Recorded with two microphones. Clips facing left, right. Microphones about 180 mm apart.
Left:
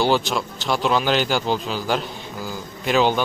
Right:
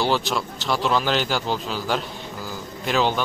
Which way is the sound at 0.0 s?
Centre (ahead or behind).